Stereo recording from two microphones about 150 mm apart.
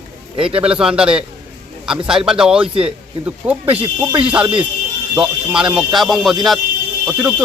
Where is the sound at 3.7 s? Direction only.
40° right (ahead or behind).